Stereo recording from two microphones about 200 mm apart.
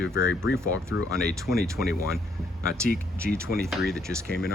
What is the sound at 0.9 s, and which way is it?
Speech, 90° left.